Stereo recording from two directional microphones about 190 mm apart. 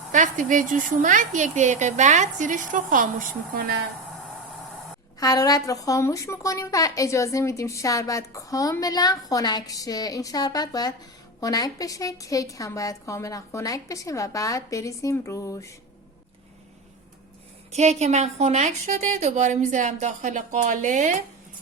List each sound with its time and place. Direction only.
0.1 s speech: 40° right (ahead or behind)
5.2 s a woman's voice: 20° left (ahead or behind)
17.7 s speech: 35° right (ahead or behind)